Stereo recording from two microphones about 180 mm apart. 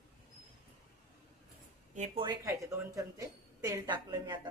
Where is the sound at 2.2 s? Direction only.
20° right (ahead or behind).